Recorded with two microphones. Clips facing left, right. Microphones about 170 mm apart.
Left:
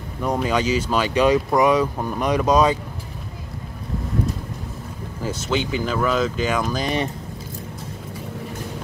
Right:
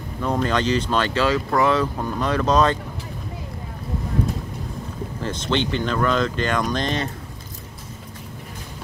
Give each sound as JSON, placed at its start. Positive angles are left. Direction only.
{"t": 0.2, "sound": "speech", "side_deg": 10}
{"t": 5.2, "sound": "speech", "side_deg": 5}